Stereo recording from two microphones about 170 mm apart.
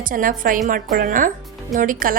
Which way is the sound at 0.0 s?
55° right (ahead or behind).